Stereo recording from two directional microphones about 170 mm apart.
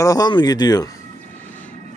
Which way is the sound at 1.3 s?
10° left (ahead or behind).